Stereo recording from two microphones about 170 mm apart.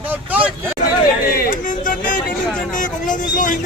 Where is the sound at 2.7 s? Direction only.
50° left (ahead or behind).